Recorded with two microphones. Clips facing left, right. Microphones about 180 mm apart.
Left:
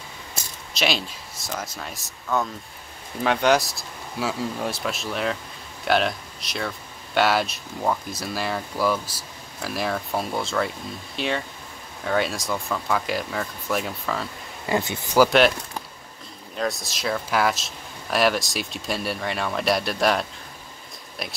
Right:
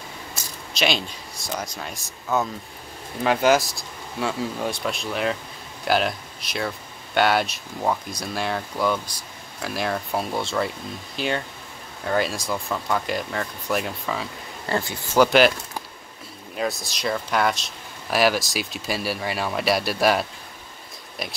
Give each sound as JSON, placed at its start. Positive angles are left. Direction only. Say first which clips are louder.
{"t": 0.7, "sound": "speech", "louder": "right 1 dB", "side_deg": 0}
{"t": 3.3, "sound": "speech", "louder": "right 1 dB", "side_deg": 0}
{"t": 14.7, "sound": "speech", "louder": "left 2 dB", "side_deg": 20}
{"t": 15.1, "sound": "speech", "louder": "even", "side_deg": 0}
{"t": 16.5, "sound": "speech", "louder": "even", "side_deg": 0}